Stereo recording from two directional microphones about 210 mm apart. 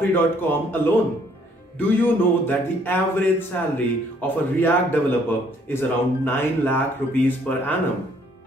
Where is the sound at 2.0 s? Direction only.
10° left (ahead or behind).